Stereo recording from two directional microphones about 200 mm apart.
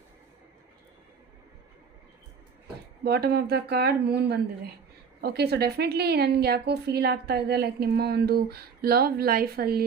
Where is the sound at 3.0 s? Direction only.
55° right (ahead or behind).